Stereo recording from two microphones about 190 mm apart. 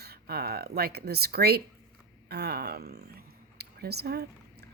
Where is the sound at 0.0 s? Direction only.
55° right (ahead or behind).